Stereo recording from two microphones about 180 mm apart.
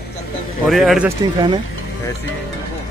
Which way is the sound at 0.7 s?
Centre (ahead or behind).